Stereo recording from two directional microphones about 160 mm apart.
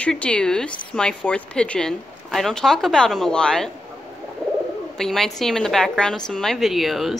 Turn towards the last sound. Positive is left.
turn(degrees=0)  # may be behind; listen again after turning